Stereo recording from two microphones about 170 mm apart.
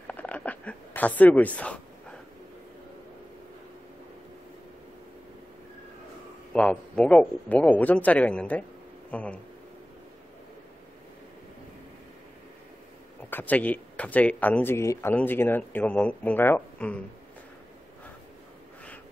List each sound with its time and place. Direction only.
0.0 s a sound: 10° left (ahead or behind)
6.5 s speech: 5° left (ahead or behind)
13.3 s speech: 10° left (ahead or behind)